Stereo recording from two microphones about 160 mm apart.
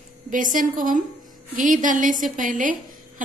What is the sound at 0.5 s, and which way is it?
A woman's voice, 55° right (ahead or behind).